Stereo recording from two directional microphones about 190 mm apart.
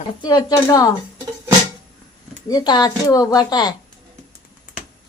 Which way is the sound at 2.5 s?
20° left (ahead or behind).